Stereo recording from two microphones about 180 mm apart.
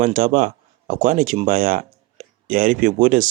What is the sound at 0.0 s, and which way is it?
Speech, 50° right (ahead or behind).